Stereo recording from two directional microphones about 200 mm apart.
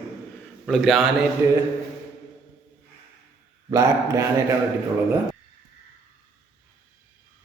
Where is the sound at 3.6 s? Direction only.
15° right (ahead or behind).